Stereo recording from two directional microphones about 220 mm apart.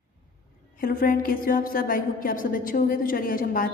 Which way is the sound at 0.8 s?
40° left (ahead or behind).